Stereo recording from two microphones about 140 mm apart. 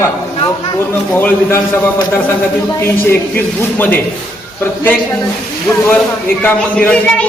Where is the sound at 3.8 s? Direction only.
10° left (ahead or behind).